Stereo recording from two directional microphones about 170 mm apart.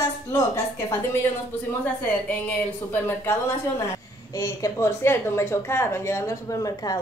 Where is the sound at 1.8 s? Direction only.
10° left (ahead or behind).